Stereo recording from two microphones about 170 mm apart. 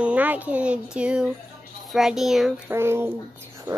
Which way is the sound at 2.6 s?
15° right (ahead or behind).